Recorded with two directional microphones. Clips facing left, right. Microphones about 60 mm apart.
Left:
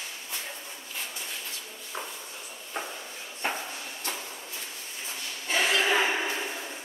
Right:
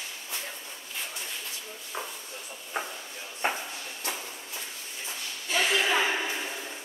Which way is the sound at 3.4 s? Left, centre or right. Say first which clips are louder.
Right 2 dB; centre.